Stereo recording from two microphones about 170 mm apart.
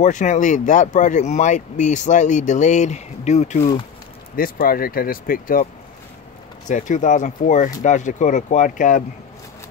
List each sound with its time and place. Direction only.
0.0 s speech: 45° left (ahead or behind)
4.4 s speech: 55° left (ahead or behind)
6.7 s speech: 50° left (ahead or behind)